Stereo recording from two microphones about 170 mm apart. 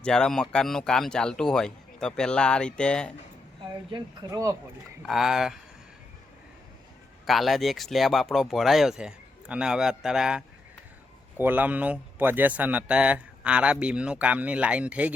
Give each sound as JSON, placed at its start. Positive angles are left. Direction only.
{"t": 0.0, "sound": "speech", "side_deg": 5}
{"t": 3.9, "sound": "speech", "side_deg": -20}
{"t": 5.0, "sound": "speech", "side_deg": 0}
{"t": 7.3, "sound": "a man's voice", "side_deg": 0}